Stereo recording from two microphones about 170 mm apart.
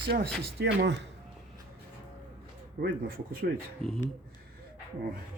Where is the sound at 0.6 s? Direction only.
90° right.